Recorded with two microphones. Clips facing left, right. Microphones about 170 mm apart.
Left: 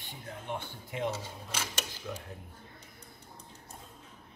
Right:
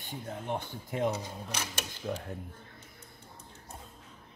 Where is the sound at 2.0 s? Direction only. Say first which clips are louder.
Right 7 dB; 45° right (ahead or behind).